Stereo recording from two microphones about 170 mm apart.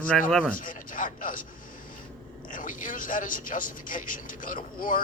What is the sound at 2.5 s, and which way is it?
A man's voice, 50° left (ahead or behind).